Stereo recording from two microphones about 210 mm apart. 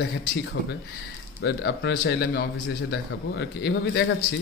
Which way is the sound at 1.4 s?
50° left (ahead or behind).